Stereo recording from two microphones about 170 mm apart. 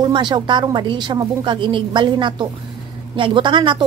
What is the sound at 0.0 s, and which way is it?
A woman's voice, 25° right (ahead or behind).